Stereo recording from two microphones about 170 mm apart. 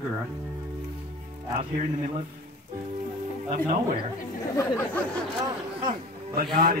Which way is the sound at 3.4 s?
50° right (ahead or behind).